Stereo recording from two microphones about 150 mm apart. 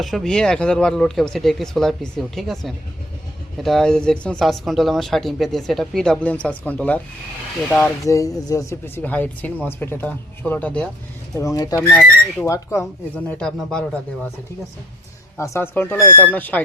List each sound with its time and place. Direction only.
0.0 s speech: centre (ahead or behind)
7.8 s speech: 20° left (ahead or behind)
11.3 s speech: 25° left (ahead or behind)
11.8 s speech: 10° left (ahead or behind)
12.5 s speech: 20° left (ahead or behind)
13.3 s speech: 5° left (ahead or behind)
15.4 s speech: 15° left (ahead or behind)